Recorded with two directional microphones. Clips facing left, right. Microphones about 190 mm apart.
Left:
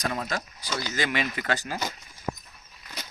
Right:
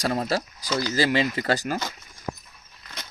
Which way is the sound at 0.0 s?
35° right (ahead or behind).